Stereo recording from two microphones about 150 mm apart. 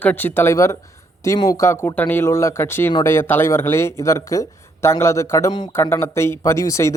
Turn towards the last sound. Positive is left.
turn(degrees=20)  # may be behind; listen again after turning